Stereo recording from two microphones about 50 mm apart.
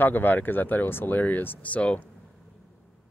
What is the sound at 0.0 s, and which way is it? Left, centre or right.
Speech, left.